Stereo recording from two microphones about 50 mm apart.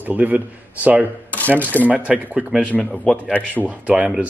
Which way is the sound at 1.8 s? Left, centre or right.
Right.